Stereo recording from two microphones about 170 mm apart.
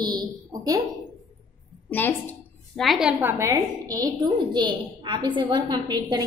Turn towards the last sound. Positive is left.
turn(degrees=-25)  # may be behind; listen again after turning